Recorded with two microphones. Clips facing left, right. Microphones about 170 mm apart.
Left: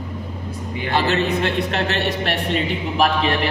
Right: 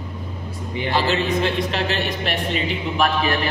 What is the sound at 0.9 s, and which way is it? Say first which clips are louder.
A man's voice: left 1 dB; 60° left (ahead or behind).